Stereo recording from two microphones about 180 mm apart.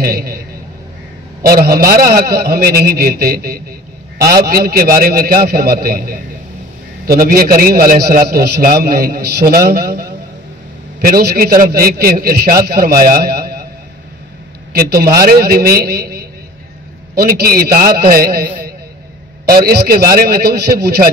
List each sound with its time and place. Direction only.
0.0 s a man's voice: 55° right (ahead or behind)
1.5 s a man's voice: 55° right (ahead or behind)
14.7 s a man's voice: 55° right (ahead or behind)
19.4 s a man's voice: 55° right (ahead or behind)